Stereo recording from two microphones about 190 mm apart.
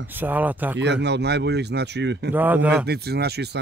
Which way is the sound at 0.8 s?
65° right (ahead or behind).